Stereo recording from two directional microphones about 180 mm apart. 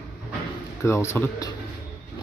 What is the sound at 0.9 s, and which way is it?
Speech, 15° left (ahead or behind).